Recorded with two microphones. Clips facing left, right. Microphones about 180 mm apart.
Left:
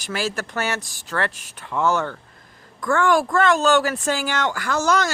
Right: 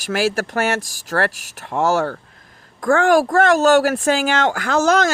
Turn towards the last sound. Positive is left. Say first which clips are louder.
# right 5 dB
turn(degrees=-50)  # may be behind; listen again after turning